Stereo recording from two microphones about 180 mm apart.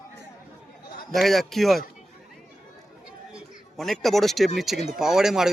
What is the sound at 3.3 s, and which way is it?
Speech, centre (ahead or behind).